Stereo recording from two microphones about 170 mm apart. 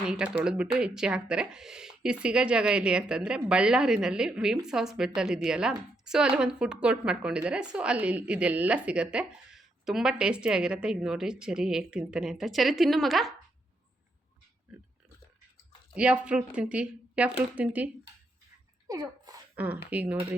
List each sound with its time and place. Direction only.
0.0 s speech: 5° right (ahead or behind)
16.0 s a woman's voice: 5° right (ahead or behind)
18.9 s sneeze: 20° right (ahead or behind)
19.5 s a woman's voice: 10° right (ahead or behind)